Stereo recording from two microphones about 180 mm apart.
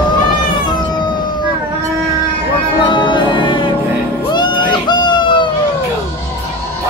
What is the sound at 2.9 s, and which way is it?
Music, 25° left (ahead or behind).